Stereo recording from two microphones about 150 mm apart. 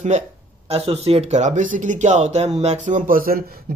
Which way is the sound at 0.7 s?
40° right (ahead or behind).